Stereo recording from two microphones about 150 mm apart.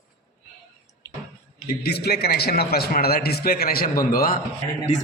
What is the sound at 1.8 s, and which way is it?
A man's voice, 90° left.